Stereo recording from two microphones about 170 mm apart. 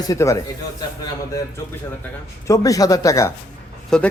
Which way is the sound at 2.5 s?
20° left (ahead or behind).